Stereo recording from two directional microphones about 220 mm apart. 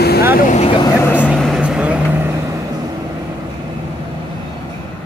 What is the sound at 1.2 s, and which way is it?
Vehicle, centre (ahead or behind).